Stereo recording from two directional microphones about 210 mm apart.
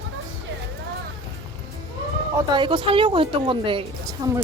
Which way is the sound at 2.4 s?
20° right (ahead or behind).